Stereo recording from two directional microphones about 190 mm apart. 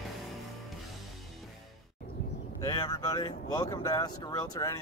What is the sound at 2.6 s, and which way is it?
Speech, 20° left (ahead or behind).